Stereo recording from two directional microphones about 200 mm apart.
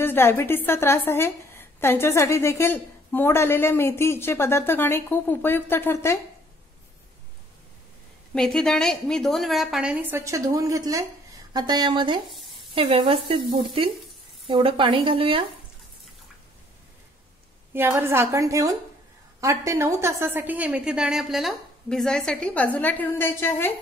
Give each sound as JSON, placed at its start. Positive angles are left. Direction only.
{"t": 0.0, "sound": "a woman's voice", "side_deg": 10}
{"t": 8.4, "sound": "a woman's voice", "side_deg": 0}
{"t": 11.5, "sound": "stir", "side_deg": -20}
{"t": 12.3, "sound": "sizzle", "side_deg": 0}
{"t": 12.7, "sound": "stir", "side_deg": -30}
{"t": 17.7, "sound": "a woman's voice", "side_deg": -10}